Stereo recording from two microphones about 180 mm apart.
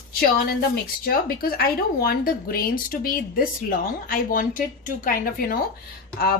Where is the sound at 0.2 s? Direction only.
55° left (ahead or behind).